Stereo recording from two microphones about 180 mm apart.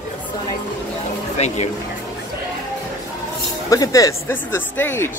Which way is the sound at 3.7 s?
20° left (ahead or behind).